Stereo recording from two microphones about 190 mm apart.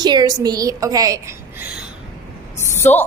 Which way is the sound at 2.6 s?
15° left (ahead or behind).